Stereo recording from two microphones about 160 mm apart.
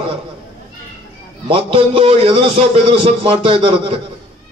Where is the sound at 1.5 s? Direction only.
35° right (ahead or behind).